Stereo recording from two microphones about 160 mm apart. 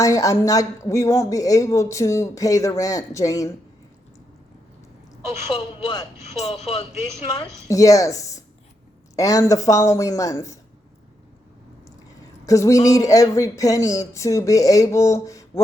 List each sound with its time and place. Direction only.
0.0 s speech: 20° left (ahead or behind)
5.5 s speech: 30° left (ahead or behind)
6.5 s speech: 35° left (ahead or behind)
7.7 s speech: 20° left (ahead or behind)
12.5 s speech: 20° left (ahead or behind)